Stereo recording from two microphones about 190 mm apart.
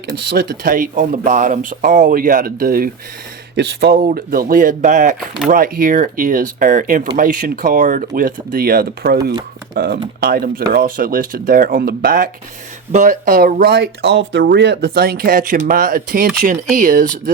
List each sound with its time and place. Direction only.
0.3 s speech: 55° right (ahead or behind)
3.5 s speech: 60° right (ahead or behind); by 17.3 s 45° right (ahead or behind)